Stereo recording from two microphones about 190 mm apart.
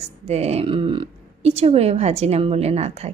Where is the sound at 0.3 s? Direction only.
35° right (ahead or behind).